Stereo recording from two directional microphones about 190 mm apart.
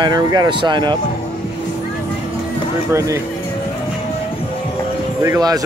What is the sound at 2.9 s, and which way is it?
Speech, 15° right (ahead or behind).